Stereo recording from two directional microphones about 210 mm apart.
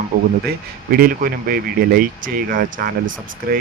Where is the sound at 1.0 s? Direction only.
45° right (ahead or behind).